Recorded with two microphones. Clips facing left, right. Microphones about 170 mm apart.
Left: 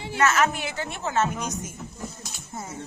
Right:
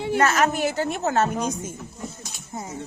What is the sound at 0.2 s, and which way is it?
A woman's voice, 35° right (ahead or behind).